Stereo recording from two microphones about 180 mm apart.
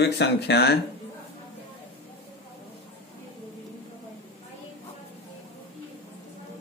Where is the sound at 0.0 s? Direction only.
70° left (ahead or behind).